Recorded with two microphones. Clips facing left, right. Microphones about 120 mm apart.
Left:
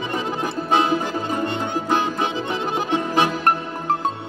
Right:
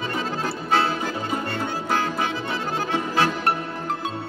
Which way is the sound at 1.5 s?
20° left (ahead or behind).